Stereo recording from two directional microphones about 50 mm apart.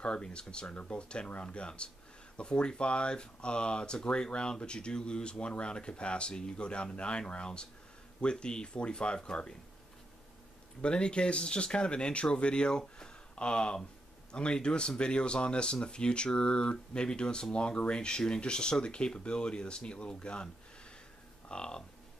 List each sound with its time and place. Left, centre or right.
0.0 s speech: centre
10.8 s speech: centre
21.5 s speech: centre